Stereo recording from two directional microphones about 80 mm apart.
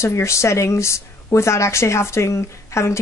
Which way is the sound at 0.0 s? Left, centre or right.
Left.